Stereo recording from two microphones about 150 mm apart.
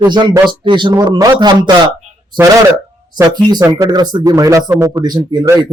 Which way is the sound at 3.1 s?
25° right (ahead or behind).